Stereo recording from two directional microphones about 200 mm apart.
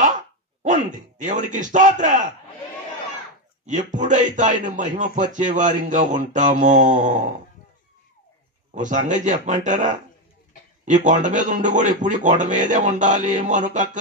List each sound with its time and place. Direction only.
0.0 s speech: 40° right (ahead or behind)
3.6 s a man's voice: 40° right (ahead or behind)
8.7 s a man's voice: 40° right (ahead or behind)